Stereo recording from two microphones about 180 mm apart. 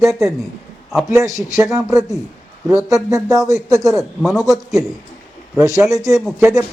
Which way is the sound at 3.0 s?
20° right (ahead or behind).